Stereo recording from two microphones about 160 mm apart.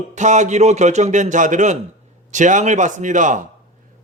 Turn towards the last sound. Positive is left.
turn(degrees=-50)  # may be behind; listen again after turning